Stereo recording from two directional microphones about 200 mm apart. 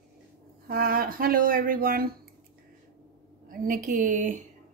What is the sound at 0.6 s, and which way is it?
Speech, 45° right (ahead or behind).